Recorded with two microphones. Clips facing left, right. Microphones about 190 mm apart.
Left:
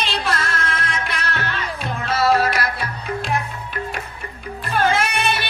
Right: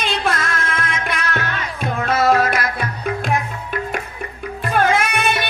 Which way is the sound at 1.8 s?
55° right (ahead or behind).